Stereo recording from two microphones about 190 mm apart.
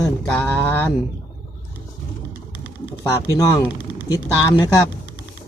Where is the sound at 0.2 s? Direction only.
5° left (ahead or behind).